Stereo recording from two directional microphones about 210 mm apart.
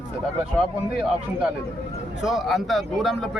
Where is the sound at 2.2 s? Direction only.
Centre (ahead or behind).